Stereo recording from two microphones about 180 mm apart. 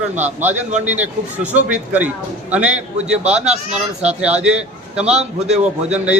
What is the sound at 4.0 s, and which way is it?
A man's voice, 5° right (ahead or behind).